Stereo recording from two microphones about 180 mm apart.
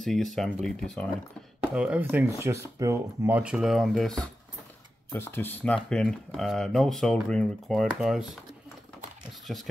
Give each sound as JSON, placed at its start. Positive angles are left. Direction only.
{"t": 0.0, "sound": "speech", "side_deg": 0}
{"t": 1.6, "sound": "speech", "side_deg": -5}
{"t": 9.5, "sound": "speech", "side_deg": 5}